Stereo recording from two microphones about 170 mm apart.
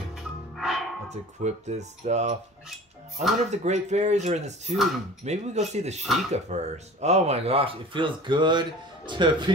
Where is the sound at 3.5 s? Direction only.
40° right (ahead or behind).